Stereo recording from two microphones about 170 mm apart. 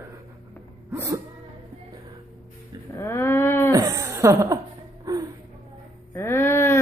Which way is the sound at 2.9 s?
15° left (ahead or behind).